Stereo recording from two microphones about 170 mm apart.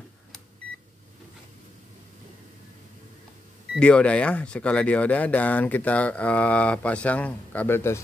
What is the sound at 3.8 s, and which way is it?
Speech, 5° left (ahead or behind).